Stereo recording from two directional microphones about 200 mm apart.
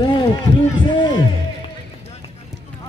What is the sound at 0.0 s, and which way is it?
Run, 20° left (ahead or behind).